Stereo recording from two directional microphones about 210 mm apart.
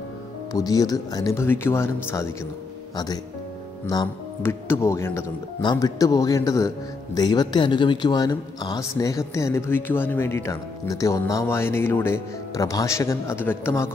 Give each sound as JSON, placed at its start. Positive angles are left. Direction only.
{"t": 0.5, "sound": "speech", "side_deg": 15}
{"t": 3.8, "sound": "speech", "side_deg": 15}